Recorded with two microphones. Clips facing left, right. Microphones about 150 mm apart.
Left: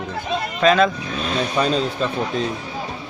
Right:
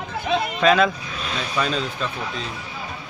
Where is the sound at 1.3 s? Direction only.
35° left (ahead or behind).